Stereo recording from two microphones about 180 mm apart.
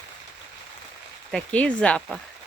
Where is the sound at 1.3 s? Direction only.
5° left (ahead or behind).